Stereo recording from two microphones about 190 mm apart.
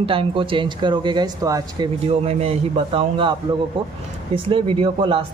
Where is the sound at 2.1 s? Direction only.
30° right (ahead or behind).